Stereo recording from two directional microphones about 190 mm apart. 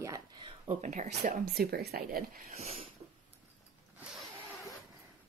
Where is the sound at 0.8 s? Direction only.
40° right (ahead or behind).